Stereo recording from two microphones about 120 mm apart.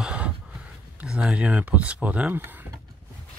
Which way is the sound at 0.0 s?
10° right (ahead or behind).